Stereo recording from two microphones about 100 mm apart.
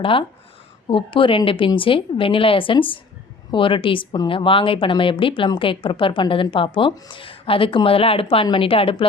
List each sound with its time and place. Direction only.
0.0 s speech: 60° left (ahead or behind)